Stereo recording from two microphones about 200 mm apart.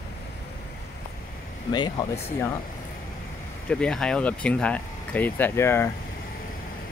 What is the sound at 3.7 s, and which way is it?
Speech, 5° left (ahead or behind).